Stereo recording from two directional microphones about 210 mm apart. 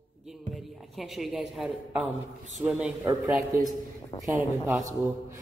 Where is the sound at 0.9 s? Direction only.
Centre (ahead or behind).